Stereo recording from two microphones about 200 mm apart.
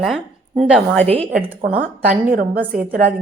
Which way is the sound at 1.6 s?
45° right (ahead or behind).